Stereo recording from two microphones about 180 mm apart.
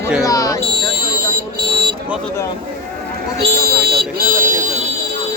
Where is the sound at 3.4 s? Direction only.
60° right (ahead or behind).